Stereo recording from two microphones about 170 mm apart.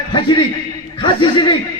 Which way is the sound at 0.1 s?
30° left (ahead or behind).